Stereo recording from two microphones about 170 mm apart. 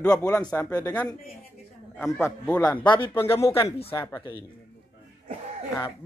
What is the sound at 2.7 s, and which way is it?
A woman's voice, 30° left (ahead or behind).